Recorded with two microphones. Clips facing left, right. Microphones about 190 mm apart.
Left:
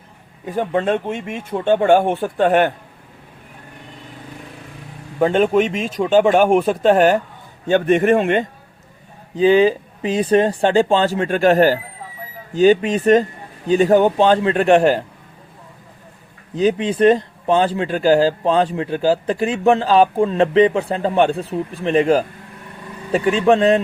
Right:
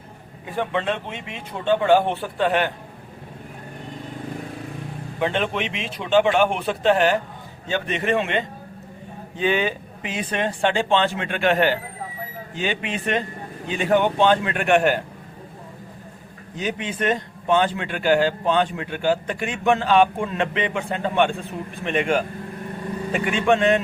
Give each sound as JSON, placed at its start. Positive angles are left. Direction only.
{"t": 0.4, "sound": "speech", "side_deg": 40}
{"t": 5.2, "sound": "speech", "side_deg": 40}
{"t": 9.3, "sound": "speech", "side_deg": 35}
{"t": 16.6, "sound": "speech", "side_deg": 35}